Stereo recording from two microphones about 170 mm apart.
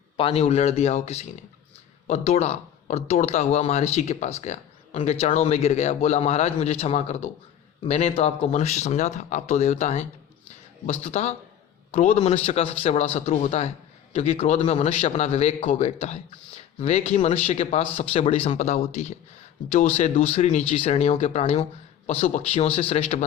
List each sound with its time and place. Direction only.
0.2 s speech: 35° left (ahead or behind)